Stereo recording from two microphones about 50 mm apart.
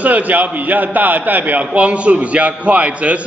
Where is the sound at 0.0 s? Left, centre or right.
Right.